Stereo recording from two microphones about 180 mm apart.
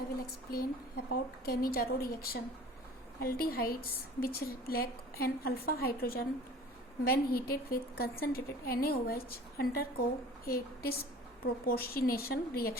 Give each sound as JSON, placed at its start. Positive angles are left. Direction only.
{"t": 0.2, "sound": "a woman's voice", "side_deg": 55}